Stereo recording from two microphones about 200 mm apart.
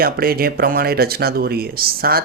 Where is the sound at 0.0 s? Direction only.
50° right (ahead or behind).